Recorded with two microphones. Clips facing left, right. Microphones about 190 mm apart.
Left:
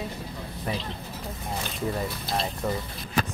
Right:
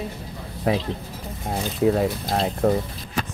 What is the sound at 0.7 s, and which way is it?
Speech, 90° right.